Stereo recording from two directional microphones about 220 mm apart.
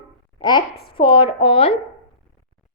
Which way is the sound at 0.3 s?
20° left (ahead or behind).